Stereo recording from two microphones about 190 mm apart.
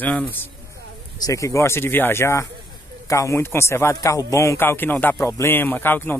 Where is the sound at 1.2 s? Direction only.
15° left (ahead or behind).